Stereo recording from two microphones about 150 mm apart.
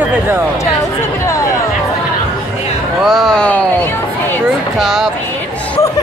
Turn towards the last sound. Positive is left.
turn(degrees=0)  # may be behind; listen again after turning